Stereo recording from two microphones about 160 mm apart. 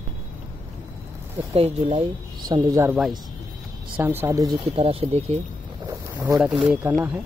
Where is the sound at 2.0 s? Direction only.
25° right (ahead or behind).